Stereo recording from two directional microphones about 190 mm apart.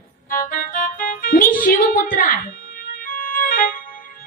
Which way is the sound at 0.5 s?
45° left (ahead or behind).